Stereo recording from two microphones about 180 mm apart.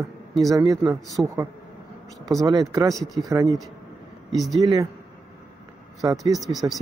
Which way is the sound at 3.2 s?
20° right (ahead or behind).